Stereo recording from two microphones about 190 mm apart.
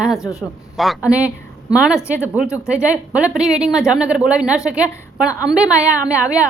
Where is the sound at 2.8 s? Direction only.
5° right (ahead or behind).